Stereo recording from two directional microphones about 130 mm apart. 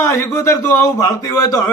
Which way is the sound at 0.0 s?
25° left (ahead or behind).